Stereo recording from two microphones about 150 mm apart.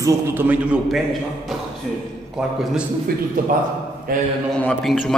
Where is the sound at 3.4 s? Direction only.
65° right (ahead or behind).